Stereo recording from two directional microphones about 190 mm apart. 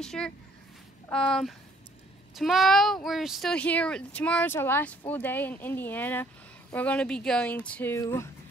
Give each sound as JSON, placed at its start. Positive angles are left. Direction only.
{"t": 0.0, "sound": "speech", "side_deg": 5}